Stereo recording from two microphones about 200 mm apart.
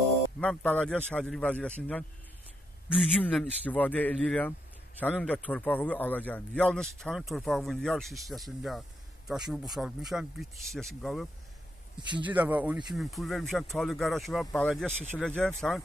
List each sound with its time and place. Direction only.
0.4 s a man's voice: 5° left (ahead or behind)
3.3 s a man's voice: 5° left (ahead or behind)
12.1 s speech: 25° right (ahead or behind)
12.4 s a man's voice: 10° right (ahead or behind)